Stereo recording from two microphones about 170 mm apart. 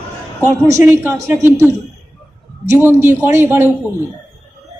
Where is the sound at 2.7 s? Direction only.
15° right (ahead or behind).